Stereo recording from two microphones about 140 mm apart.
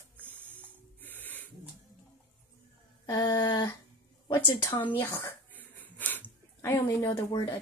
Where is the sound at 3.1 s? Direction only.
25° left (ahead or behind).